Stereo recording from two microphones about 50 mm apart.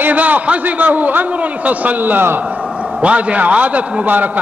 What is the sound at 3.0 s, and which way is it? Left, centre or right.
A man's voice, right.